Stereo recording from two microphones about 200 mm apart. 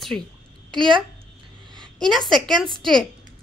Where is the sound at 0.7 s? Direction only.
25° right (ahead or behind).